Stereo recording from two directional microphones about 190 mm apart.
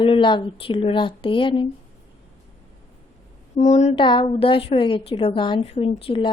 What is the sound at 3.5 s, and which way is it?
Speech, 40° left (ahead or behind).